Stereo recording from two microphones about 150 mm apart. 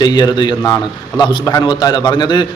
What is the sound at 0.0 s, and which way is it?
A man's voice, 30° left (ahead or behind).